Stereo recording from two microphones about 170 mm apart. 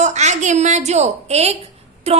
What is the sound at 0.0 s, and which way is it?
A woman's voice, 45° right (ahead or behind).